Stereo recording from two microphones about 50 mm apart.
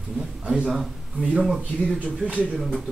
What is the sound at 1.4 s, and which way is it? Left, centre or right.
Speech, centre.